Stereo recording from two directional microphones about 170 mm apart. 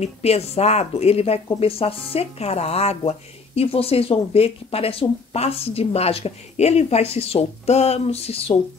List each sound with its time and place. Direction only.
0.0 s a woman's voice: 40° left (ahead or behind)